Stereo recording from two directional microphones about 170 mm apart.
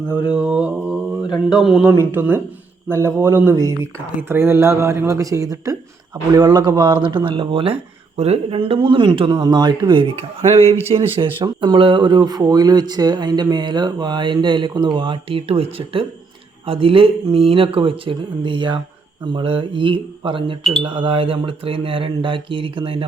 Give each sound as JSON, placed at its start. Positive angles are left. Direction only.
{"t": 0.1, "sound": "speech", "side_deg": -10}
{"t": 1.2, "sound": "mantra", "side_deg": 25}
{"t": 1.5, "sound": "speech", "side_deg": -5}